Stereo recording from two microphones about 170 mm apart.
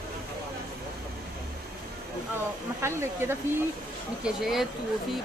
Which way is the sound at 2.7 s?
15° right (ahead or behind).